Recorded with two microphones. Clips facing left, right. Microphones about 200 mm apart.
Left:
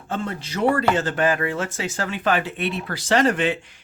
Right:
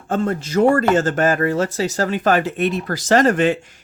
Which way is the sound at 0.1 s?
45° right (ahead or behind).